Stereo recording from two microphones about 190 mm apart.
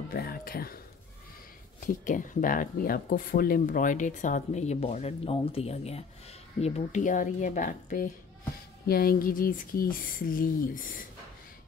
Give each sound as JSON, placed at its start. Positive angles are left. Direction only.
{"t": 0.1, "sound": "speech", "side_deg": 50}
{"t": 1.9, "sound": "speech", "side_deg": 45}